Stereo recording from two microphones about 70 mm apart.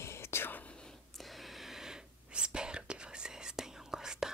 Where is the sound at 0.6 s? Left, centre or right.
Centre.